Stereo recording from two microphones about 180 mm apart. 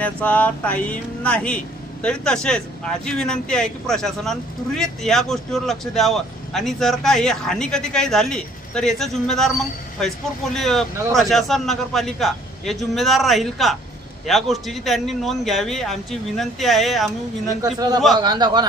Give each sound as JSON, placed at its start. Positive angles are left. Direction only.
{"t": 0.0, "sound": "speech", "side_deg": 10}
{"t": 17.6, "sound": "a man's voice", "side_deg": -20}